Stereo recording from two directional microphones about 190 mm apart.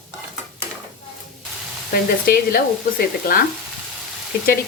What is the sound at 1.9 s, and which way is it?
Speech, 50° left (ahead or behind).